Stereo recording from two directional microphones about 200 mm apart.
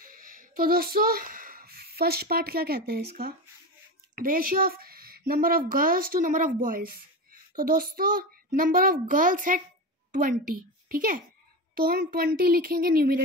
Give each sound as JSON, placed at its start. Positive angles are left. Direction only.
{"t": 0.0, "sound": "a child's voice", "side_deg": -45}
{"t": 10.9, "sound": "a child's voice", "side_deg": -45}